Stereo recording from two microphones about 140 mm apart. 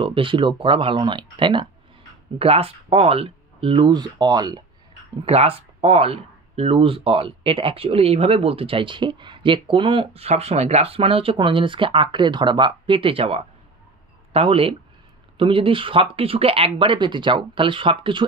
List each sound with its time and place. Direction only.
0.0 s speech: 35° right (ahead or behind)
5.2 s speech: 45° right (ahead or behind)